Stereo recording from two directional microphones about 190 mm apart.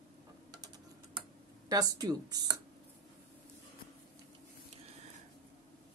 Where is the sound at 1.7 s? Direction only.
20° right (ahead or behind).